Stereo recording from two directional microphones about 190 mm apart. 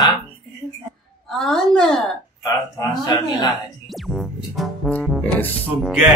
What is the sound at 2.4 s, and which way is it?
A man's voice, 20° left (ahead or behind).